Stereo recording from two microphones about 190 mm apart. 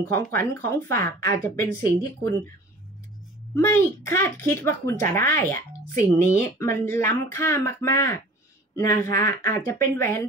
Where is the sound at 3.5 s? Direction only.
15° left (ahead or behind).